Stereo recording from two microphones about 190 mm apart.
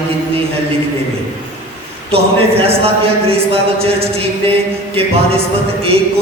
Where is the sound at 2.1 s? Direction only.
30° right (ahead or behind).